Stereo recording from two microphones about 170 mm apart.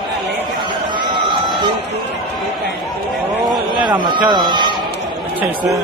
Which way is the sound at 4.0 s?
25° right (ahead or behind).